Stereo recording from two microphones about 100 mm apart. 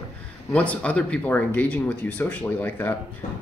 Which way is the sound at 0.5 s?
10° left (ahead or behind).